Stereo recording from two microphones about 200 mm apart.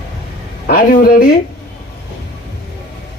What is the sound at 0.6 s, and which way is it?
Speech, 45° left (ahead or behind).